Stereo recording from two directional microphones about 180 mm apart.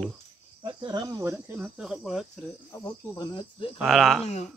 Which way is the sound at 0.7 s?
25° right (ahead or behind).